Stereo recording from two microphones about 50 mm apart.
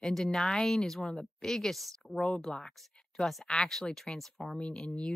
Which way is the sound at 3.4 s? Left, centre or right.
Centre.